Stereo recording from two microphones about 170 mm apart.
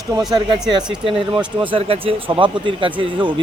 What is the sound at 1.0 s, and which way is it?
Speech, 30° right (ahead or behind).